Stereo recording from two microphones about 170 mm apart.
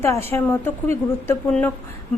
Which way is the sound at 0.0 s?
15° left (ahead or behind).